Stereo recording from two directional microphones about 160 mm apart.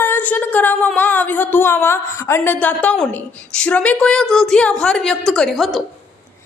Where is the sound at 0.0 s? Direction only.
10° left (ahead or behind).